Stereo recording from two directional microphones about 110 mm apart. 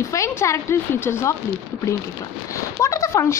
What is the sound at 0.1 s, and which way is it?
Speech, 25° left (ahead or behind).